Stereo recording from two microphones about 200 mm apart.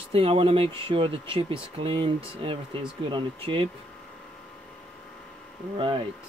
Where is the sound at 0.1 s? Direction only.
25° right (ahead or behind).